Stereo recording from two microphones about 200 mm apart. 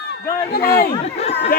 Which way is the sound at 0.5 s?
50° left (ahead or behind).